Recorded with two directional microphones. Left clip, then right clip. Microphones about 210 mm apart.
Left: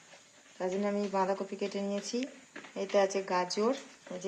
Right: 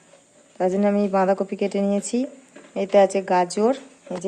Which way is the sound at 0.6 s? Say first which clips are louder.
Right 12 dB; 50° right (ahead or behind).